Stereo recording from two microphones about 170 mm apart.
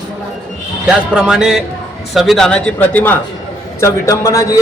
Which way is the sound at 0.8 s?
5° right (ahead or behind).